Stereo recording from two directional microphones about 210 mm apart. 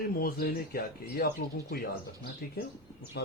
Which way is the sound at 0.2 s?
45° left (ahead or behind).